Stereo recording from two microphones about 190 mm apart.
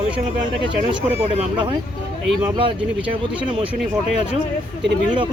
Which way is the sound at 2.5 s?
25° right (ahead or behind).